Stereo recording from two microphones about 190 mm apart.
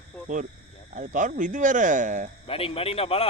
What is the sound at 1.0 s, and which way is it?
Speech, 45° right (ahead or behind).